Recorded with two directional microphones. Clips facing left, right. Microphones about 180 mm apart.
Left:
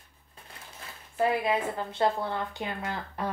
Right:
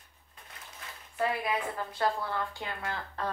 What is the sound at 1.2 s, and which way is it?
A woman's voice, 25° left (ahead or behind).